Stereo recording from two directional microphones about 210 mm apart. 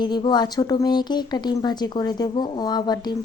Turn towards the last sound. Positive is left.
turn(degrees=20)  # may be behind; listen again after turning